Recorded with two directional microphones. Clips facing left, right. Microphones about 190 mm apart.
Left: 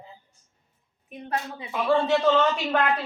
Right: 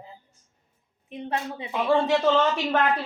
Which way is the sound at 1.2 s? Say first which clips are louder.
Right 1 dB; 25° right (ahead or behind).